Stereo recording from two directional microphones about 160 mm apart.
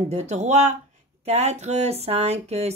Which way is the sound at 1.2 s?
40° right (ahead or behind).